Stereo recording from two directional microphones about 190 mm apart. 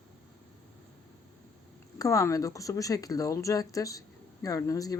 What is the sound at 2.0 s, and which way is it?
Speech, 15° left (ahead or behind).